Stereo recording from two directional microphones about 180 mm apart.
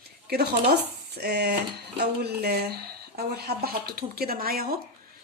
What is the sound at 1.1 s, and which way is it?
A woman's voice, 65° right (ahead or behind).